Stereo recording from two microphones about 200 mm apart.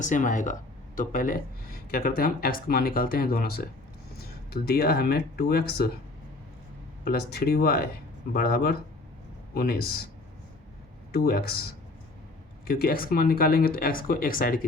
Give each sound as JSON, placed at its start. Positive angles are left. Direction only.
{"t": 0.0, "sound": "speech", "side_deg": 40}
{"t": 7.0, "sound": "speech", "side_deg": 50}
{"t": 11.1, "sound": "speech", "side_deg": 50}
{"t": 12.6, "sound": "speech", "side_deg": 50}